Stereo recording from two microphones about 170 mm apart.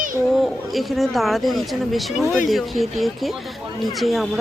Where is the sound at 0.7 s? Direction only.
Centre (ahead or behind).